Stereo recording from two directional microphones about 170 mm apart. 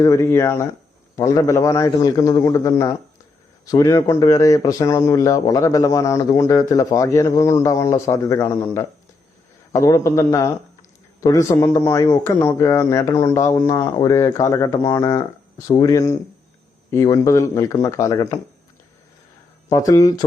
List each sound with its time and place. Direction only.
0.0 s a man's voice: 15° left (ahead or behind)
19.6 s a man's voice: 20° left (ahead or behind)